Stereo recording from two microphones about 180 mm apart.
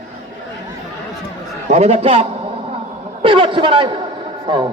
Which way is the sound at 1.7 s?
35° right (ahead or behind).